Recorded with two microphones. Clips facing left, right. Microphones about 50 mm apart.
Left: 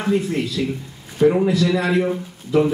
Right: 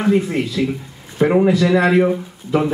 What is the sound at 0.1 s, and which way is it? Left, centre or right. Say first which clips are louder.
A man's voice: even; right.